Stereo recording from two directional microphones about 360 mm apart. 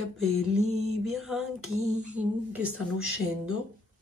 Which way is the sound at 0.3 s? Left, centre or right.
Right.